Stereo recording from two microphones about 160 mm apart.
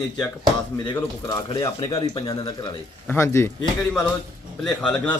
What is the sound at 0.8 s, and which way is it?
Speech, 25° left (ahead or behind).